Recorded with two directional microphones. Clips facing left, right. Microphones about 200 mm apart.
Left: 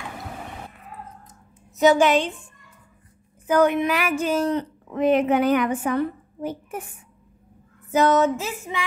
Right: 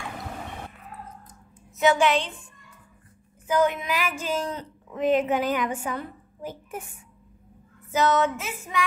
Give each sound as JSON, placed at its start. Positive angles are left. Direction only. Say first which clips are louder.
{"t": 1.8, "sound": "a woman's voice", "louder": "left 4 dB", "side_deg": 40}
{"t": 3.4, "sound": "a woman's voice", "louder": "left 5 dB", "side_deg": 60}
{"t": 7.9, "sound": "a woman's voice", "louder": "left 4 dB", "side_deg": 50}
{"t": 8.7, "sound": "female singing", "louder": "right 4 dB", "side_deg": 25}